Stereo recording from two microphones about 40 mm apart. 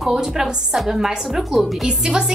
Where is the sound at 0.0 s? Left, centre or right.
Centre.